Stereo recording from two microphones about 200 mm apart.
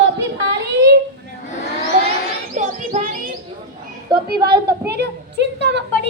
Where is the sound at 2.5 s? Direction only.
35° right (ahead or behind).